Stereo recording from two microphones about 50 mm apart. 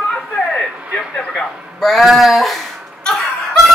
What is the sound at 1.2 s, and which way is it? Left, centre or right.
Speech, centre.